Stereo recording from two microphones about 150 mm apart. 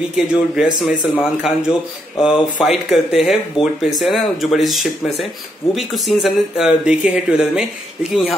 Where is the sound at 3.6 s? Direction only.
35° left (ahead or behind).